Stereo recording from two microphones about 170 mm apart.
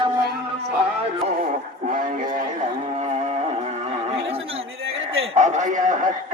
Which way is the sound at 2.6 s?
40° right (ahead or behind).